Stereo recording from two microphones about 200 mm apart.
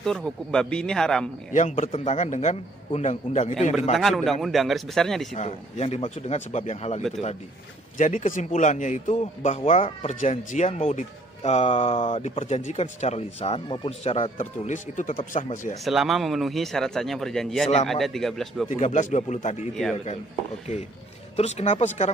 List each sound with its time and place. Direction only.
0.0 s speech: 5° left (ahead or behind)
1.5 s speech: 35° left (ahead or behind)
3.9 s speech: centre (ahead or behind)
5.3 s speech: 35° left (ahead or behind)
8.0 s speech: 40° left (ahead or behind)
15.8 s speech: centre (ahead or behind)
18.7 s speech: 35° left (ahead or behind)
19.7 s speech: centre (ahead or behind)
21.4 s speech: 35° left (ahead or behind)